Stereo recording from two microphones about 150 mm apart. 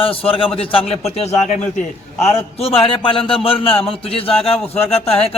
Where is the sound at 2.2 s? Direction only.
40° left (ahead or behind).